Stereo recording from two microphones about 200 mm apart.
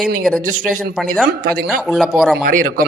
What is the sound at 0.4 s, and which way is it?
Speech, 45° right (ahead or behind).